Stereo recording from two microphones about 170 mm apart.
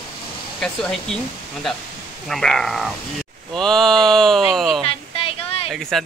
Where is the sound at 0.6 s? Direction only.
5° left (ahead or behind).